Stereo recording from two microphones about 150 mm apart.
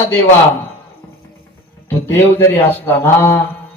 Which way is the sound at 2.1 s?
15° left (ahead or behind).